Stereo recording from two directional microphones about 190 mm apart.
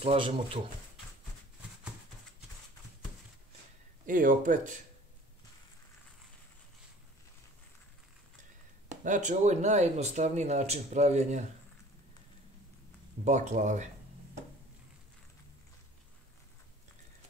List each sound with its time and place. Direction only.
0.0 s speech: 30° right (ahead or behind)
4.0 s speech: 45° right (ahead or behind)
8.8 s speech: 40° right (ahead or behind)
13.2 s speech: 40° right (ahead or behind)